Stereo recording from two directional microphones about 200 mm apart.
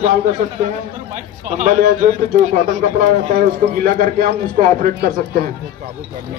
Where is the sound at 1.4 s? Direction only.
40° right (ahead or behind).